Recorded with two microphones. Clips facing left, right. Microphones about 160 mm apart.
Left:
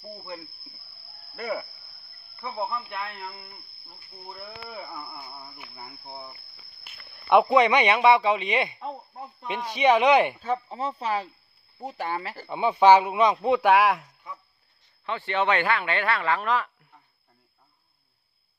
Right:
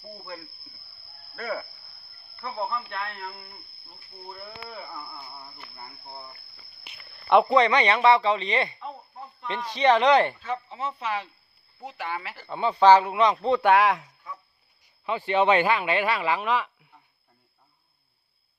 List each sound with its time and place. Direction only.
1.3 s speech: 15° left (ahead or behind)
10.4 s speech: 35° left (ahead or behind)
12.4 s speech: 15° left (ahead or behind)
15.0 s speech: 10° right (ahead or behind)